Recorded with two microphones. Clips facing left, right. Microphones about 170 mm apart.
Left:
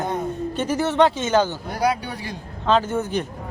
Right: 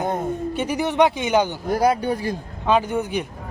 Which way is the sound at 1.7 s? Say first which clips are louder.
Right 4 dB; 45° right (ahead or behind).